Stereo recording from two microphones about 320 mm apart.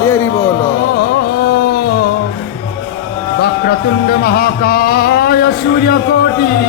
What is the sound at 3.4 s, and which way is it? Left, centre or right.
Music, left.